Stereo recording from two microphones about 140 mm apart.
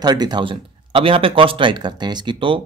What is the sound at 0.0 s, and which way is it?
A man's voice, 30° right (ahead or behind).